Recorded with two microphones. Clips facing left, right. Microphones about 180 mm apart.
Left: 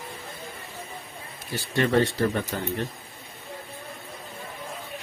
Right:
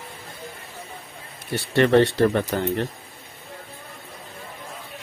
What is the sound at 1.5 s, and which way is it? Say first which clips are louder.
Speech: right 6 dB; 65° right (ahead or behind).